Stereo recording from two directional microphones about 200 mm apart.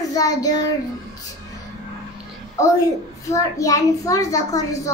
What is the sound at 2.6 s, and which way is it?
A child's voice, 15° left (ahead or behind).